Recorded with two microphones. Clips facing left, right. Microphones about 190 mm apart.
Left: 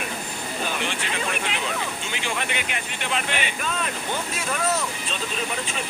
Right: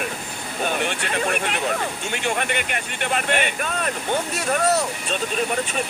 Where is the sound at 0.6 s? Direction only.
55° right (ahead or behind).